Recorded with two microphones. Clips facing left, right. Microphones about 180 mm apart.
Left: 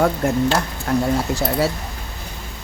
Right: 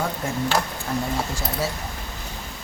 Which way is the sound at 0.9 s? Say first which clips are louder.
Left 8 dB; 80° left.